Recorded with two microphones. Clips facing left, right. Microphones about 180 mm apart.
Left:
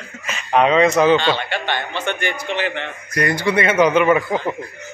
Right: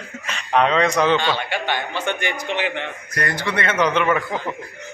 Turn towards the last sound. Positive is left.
turn(degrees=10)  # may be behind; listen again after turning